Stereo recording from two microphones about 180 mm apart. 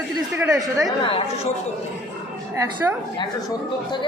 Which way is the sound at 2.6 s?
15° right (ahead or behind).